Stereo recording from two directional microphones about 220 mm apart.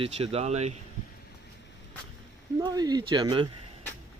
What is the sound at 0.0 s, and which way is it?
Speech, 25° right (ahead or behind).